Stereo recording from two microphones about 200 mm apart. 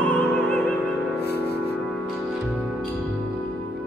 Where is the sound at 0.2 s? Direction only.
5° left (ahead or behind).